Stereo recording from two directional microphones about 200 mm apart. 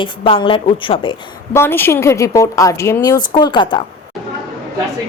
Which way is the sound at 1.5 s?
10° left (ahead or behind).